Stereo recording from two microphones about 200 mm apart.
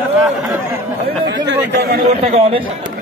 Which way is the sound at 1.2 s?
60° right (ahead or behind).